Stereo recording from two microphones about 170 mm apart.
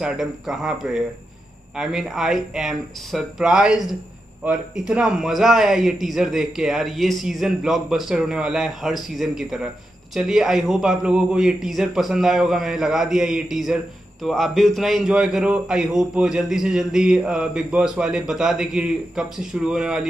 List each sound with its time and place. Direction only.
0.0 s a man's voice: centre (ahead or behind)